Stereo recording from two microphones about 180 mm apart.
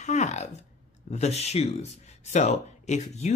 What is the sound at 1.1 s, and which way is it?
Speech, 35° left (ahead or behind).